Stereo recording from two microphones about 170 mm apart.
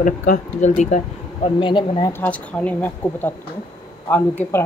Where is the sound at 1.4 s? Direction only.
30° left (ahead or behind).